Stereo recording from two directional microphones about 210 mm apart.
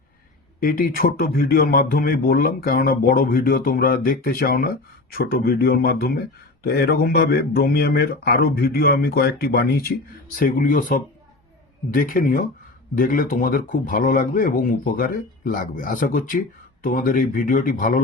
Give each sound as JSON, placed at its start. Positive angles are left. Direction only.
{"t": 0.6, "sound": "speech", "side_deg": 45}